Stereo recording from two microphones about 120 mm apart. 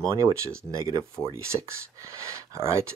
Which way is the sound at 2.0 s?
25° right (ahead or behind).